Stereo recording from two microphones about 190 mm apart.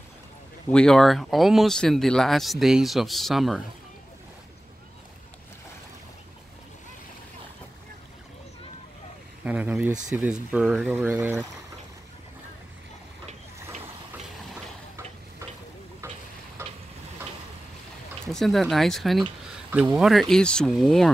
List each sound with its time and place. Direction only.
0.7 s speech: 5° left (ahead or behind)
9.4 s speech: 10° right (ahead or behind)
13.3 s ratchet: 35° right (ahead or behind)
18.3 s speech: centre (ahead or behind)